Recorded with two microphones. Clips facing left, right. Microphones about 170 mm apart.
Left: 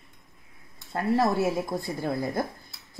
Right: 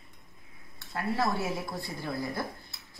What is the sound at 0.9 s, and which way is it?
Speech, 50° left (ahead or behind).